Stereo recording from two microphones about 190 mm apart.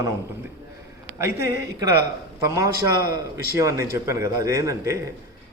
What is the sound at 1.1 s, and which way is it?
A man's voice, 15° right (ahead or behind).